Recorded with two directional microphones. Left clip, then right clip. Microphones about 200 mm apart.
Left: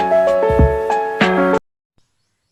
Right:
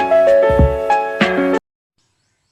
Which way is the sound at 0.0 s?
Centre (ahead or behind).